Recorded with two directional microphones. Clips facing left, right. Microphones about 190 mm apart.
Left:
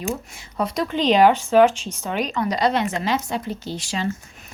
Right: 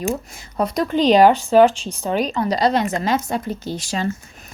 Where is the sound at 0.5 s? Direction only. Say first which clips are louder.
Right 4 dB; 40° right (ahead or behind).